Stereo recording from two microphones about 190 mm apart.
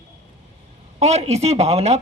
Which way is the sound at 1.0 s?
35° right (ahead or behind).